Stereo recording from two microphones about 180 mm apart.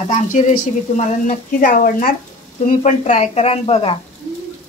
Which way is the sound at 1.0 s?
45° left (ahead or behind).